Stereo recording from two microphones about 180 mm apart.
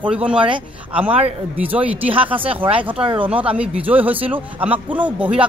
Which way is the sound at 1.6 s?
10° right (ahead or behind).